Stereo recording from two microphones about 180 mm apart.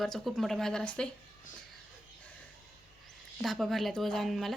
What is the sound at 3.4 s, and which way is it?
A woman's voice, centre (ahead or behind).